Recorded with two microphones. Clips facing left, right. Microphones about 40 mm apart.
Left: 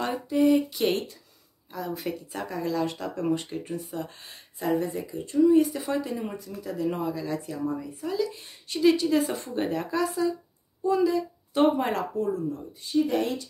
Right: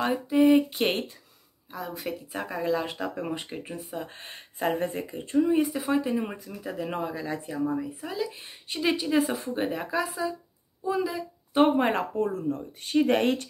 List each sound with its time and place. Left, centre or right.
0.0 s speech: centre
0.5 s speech: right
1.7 s speech: centre
4.2 s speech: right
5.7 s speech: centre
11.5 s speech: right
12.3 s speech: right